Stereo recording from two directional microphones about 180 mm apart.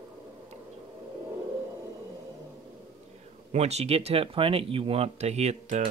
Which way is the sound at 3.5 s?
35° right (ahead or behind).